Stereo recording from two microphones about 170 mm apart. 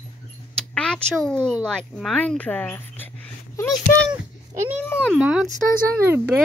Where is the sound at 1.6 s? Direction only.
5° left (ahead or behind).